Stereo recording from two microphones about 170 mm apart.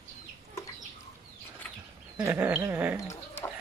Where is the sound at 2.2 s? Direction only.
10° right (ahead or behind).